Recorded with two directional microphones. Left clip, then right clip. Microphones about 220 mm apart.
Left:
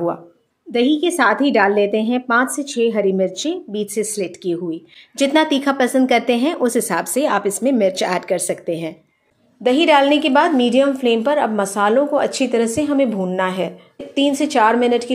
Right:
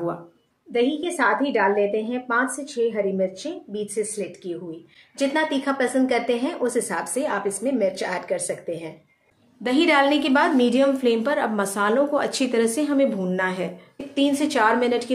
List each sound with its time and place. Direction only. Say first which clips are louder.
0.7 s speech: left 6 dB; 45° left (ahead or behind)
9.6 s a woman's voice: left 6 dB; 20° left (ahead or behind)